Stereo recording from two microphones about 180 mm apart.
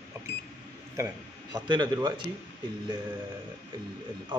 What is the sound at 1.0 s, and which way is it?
Speech, 20° right (ahead or behind).